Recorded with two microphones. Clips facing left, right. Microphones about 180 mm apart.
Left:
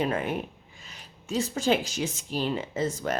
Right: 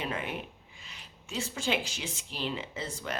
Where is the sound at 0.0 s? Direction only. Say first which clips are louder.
Left 8 dB; 45° left (ahead or behind).